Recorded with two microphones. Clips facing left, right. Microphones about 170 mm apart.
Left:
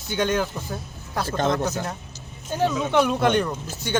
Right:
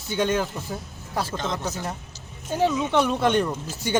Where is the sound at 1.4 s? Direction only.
55° left (ahead or behind).